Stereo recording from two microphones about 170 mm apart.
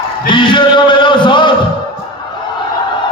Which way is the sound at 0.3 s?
30° left (ahead or behind).